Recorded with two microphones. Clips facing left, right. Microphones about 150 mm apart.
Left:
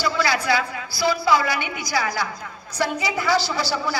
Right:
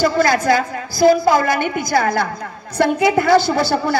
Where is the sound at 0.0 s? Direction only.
50° right (ahead or behind).